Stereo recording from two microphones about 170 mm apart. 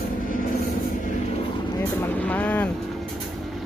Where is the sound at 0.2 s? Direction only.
55° left (ahead or behind).